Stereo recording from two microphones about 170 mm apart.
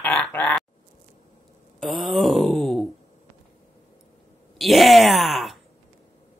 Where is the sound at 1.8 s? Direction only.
Centre (ahead or behind).